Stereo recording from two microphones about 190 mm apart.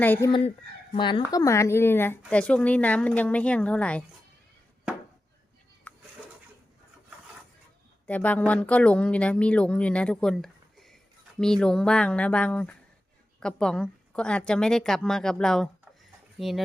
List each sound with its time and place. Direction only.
0.0 s speech: 10° left (ahead or behind)
0.3 s speech: 25° left (ahead or behind); by 4.0 s 5° left (ahead or behind)
5.9 s a sound: 10° left (ahead or behind)
8.0 s a woman's voice: 10° left (ahead or behind)